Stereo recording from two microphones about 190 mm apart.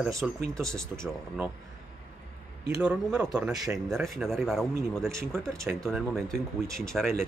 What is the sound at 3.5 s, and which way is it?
Speech, 20° right (ahead or behind).